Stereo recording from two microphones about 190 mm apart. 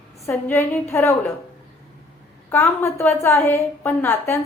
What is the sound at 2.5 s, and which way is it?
A woman's voice, 15° left (ahead or behind).